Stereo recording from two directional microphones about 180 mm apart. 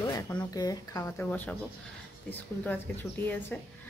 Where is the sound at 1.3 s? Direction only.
5° left (ahead or behind).